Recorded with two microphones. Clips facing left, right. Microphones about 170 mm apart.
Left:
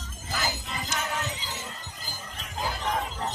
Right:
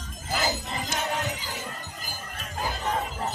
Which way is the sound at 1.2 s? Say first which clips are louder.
Right 3 dB; 10° right (ahead or behind).